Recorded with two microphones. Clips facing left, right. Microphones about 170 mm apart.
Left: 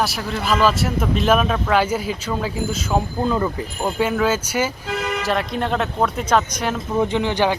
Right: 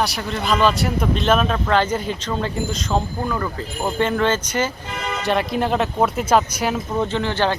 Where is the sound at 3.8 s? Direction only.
5° left (ahead or behind).